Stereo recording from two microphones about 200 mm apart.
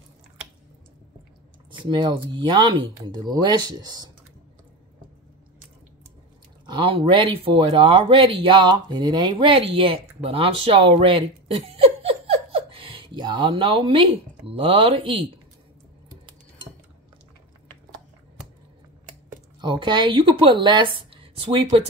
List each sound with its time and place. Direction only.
1.7 s speech: 25° right (ahead or behind)
6.7 s speech: 25° right (ahead or behind)
19.6 s speech: 25° right (ahead or behind)